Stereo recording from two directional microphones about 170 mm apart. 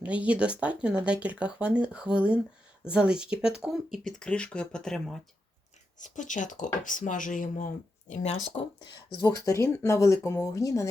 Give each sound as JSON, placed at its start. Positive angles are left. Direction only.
{"t": 0.0, "sound": "speech", "side_deg": -10}
{"t": 6.0, "sound": "speech", "side_deg": 45}
{"t": 8.5, "sound": "speech", "side_deg": 25}